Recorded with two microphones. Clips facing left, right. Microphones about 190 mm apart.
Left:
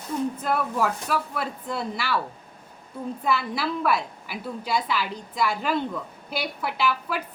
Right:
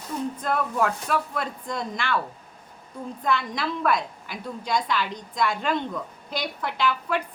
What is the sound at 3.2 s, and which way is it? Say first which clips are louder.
A woman's voice: even; 5° left (ahead or behind).